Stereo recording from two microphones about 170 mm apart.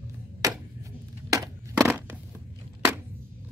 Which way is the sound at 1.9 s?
10° right (ahead or behind).